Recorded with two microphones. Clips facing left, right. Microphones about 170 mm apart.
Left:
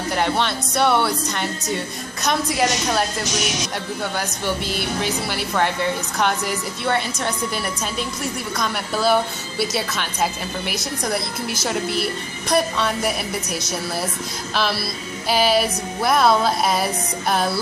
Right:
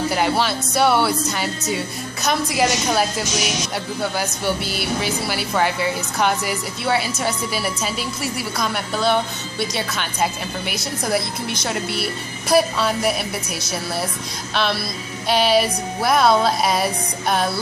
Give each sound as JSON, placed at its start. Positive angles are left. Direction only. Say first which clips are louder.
{"t": 0.1, "sound": "speech", "louder": "right 1 dB", "side_deg": -5}